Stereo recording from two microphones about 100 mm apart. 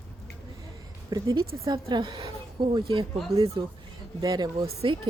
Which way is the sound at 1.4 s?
50° right (ahead or behind).